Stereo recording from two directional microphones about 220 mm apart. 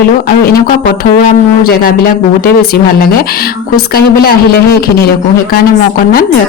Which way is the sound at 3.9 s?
45° left (ahead or behind).